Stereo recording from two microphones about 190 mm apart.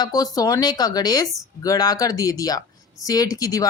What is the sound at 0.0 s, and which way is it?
Speech, 20° left (ahead or behind).